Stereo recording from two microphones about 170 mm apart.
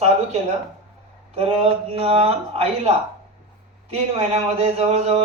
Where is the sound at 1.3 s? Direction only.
35° right (ahead or behind).